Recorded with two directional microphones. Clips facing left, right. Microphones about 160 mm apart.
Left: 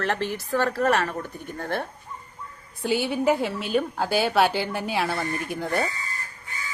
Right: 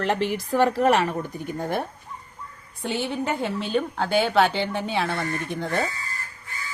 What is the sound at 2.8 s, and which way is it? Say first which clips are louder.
Speech: left 4 dB; 5° left (ahead or behind).